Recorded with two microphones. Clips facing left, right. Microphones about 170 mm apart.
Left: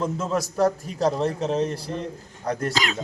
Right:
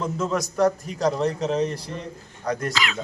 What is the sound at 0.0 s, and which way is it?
Speech, 5° left (ahead or behind).